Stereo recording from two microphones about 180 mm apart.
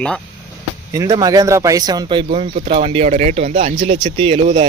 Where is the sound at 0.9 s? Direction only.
20° right (ahead or behind).